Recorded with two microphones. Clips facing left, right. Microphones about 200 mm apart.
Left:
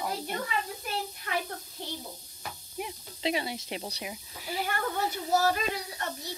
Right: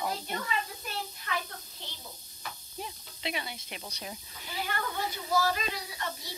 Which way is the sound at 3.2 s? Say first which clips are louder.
Left 7 dB; 30° left (ahead or behind).